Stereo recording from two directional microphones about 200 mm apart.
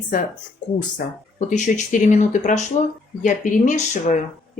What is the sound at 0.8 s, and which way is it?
Speech, 40° left (ahead or behind).